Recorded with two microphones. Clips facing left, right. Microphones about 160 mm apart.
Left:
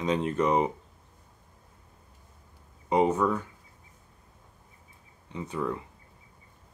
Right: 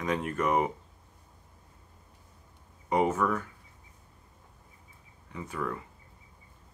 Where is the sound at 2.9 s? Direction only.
20° left (ahead or behind).